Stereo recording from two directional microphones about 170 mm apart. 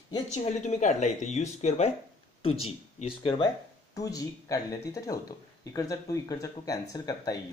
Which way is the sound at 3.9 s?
20° left (ahead or behind).